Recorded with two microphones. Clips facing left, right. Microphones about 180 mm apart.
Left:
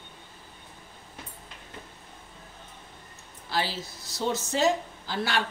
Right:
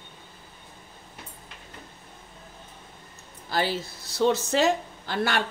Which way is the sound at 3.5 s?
55° right (ahead or behind).